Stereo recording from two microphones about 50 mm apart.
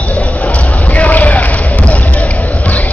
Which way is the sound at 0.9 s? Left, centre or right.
Left.